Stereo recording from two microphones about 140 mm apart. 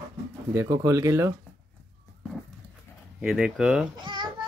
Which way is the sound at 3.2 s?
5° right (ahead or behind).